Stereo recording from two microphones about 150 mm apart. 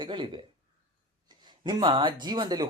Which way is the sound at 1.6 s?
30° right (ahead or behind).